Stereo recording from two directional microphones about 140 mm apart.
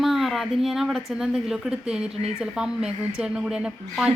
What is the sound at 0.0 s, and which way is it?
A woman's voice, centre (ahead or behind).